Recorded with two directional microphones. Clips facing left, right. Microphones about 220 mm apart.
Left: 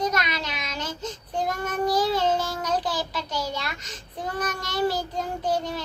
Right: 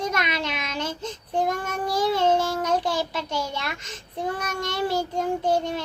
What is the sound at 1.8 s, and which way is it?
Child singing, 25° right (ahead or behind).